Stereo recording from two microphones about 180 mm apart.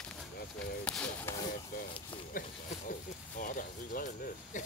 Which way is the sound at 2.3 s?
50° left (ahead or behind).